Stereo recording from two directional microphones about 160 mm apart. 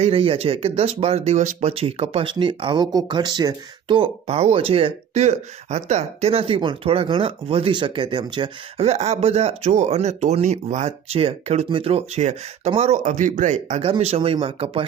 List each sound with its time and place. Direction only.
0.0 s speech: 40° right (ahead or behind)
8.8 s speech: 45° right (ahead or behind)